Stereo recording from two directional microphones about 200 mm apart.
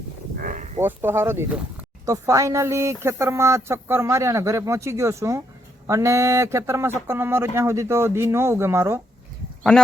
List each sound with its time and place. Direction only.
0.3 s livestock: 40° right (ahead or behind)
0.8 s speech: 10° right (ahead or behind)